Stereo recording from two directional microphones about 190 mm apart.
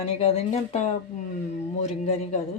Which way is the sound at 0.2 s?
30° left (ahead or behind).